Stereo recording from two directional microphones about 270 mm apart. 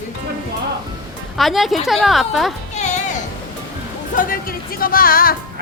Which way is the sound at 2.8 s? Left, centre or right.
Left.